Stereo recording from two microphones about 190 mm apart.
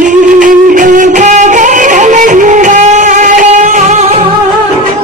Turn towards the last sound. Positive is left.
turn(degrees=-35)  # may be behind; listen again after turning